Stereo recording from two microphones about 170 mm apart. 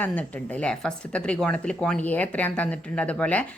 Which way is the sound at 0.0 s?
10° left (ahead or behind).